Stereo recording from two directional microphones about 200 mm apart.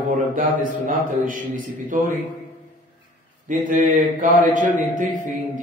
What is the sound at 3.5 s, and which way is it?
A man's voice, 40° right (ahead or behind).